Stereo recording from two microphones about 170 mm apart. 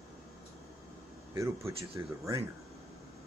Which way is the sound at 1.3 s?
15° right (ahead or behind).